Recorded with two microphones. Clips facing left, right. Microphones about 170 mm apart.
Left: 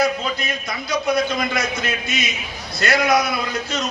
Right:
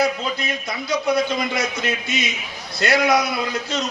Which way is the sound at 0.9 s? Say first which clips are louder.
Even; 25° right (ahead or behind).